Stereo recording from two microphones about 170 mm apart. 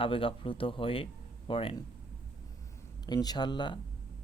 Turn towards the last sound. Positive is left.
turn(degrees=25)  # may be behind; listen again after turning